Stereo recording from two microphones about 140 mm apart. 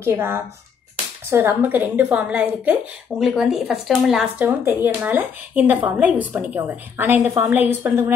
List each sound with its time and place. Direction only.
0.0 s speech: 15° right (ahead or behind)
4.4 s speech: 15° right (ahead or behind)